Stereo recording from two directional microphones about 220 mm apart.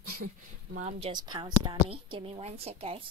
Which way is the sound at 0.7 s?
30° right (ahead or behind).